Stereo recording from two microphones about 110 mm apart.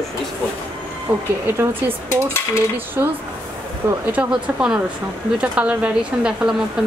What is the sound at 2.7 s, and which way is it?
Speech, 20° right (ahead or behind).